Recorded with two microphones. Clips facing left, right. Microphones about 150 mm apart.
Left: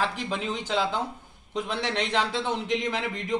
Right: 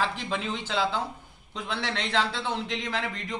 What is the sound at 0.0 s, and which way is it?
Speech, 5° left (ahead or behind).